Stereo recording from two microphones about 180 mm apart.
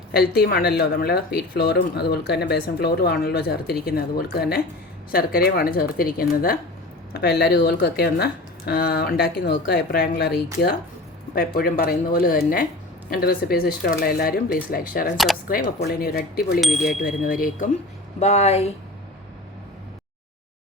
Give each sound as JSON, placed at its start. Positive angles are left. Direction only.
{"t": 0.1, "sound": "speech", "side_deg": 60}
{"t": 16.6, "sound": "speech", "side_deg": 0}
{"t": 17.2, "sound": "speech", "side_deg": 50}
{"t": 18.2, "sound": "speech", "side_deg": 35}